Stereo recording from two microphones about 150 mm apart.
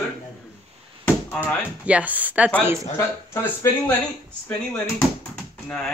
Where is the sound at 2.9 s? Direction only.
20° left (ahead or behind).